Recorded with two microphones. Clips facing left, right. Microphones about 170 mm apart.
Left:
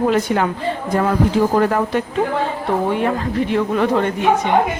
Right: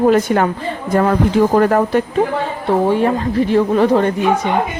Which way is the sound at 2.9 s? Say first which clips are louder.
Right 4 dB; 35° right (ahead or behind).